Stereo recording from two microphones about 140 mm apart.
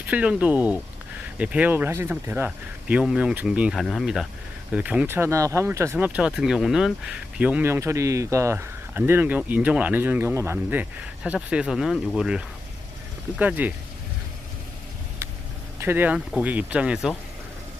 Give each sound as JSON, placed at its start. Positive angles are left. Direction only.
{"t": 0.0, "sound": "speech", "side_deg": -10}
{"t": 6.1, "sound": "speech", "side_deg": -5}
{"t": 13.4, "sound": "speech", "side_deg": -10}
{"t": 15.8, "sound": "speech", "side_deg": -15}